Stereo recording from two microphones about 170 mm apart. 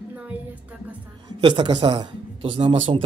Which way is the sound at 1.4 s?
30° right (ahead or behind).